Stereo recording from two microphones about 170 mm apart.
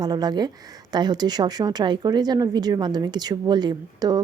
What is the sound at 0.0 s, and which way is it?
Speech, 25° right (ahead or behind).